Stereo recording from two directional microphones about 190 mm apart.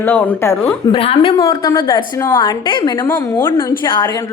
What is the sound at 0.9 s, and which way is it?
A woman's voice, 30° left (ahead or behind).